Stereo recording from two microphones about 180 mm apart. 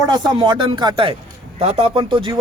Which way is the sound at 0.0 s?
20° right (ahead or behind).